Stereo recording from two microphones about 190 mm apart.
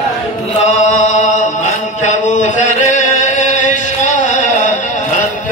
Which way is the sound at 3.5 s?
40° left (ahead or behind).